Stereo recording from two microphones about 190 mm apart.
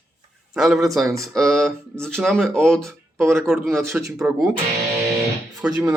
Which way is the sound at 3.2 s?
15° right (ahead or behind).